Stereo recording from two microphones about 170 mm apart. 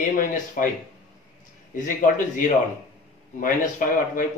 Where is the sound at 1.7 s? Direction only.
50° left (ahead or behind).